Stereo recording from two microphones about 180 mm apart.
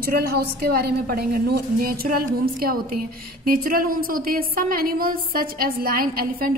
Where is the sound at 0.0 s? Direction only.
55° right (ahead or behind).